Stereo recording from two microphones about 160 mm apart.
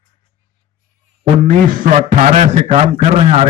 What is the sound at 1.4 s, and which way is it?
A man's voice, 55° right (ahead or behind).